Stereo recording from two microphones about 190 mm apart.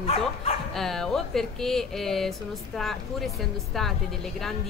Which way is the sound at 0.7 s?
Centre (ahead or behind).